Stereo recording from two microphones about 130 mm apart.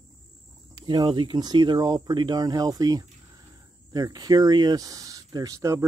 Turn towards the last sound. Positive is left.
turn(degrees=-25)  # may be behind; listen again after turning